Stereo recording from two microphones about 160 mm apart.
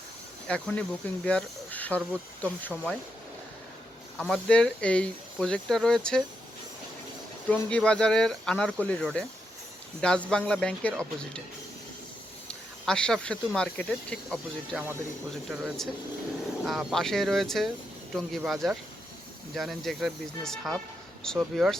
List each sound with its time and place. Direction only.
0.4 s speech: 5° left (ahead or behind)
4.2 s speech: 5° left (ahead or behind)
7.5 s speech: 5° left (ahead or behind)
12.8 s speech: 5° left (ahead or behind)